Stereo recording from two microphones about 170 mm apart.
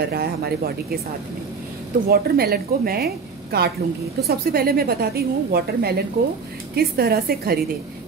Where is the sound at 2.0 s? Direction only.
65° right (ahead or behind).